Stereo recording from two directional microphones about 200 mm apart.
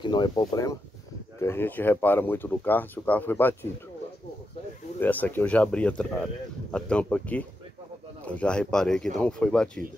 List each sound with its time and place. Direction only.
0.0 s speech: 20° left (ahead or behind)
5.0 s speech: 10° left (ahead or behind)